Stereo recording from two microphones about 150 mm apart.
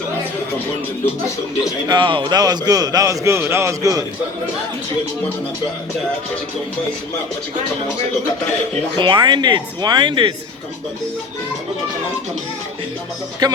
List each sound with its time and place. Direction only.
1.9 s a man's voice: 30° right (ahead or behind)
9.0 s speech: 30° right (ahead or behind)
13.4 s a man's voice: 25° right (ahead or behind)